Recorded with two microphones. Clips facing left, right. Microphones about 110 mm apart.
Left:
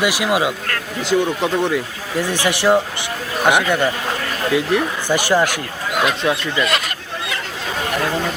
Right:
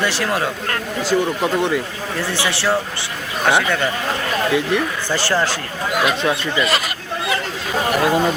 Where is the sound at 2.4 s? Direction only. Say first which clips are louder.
Left 6 dB; 15° left (ahead or behind).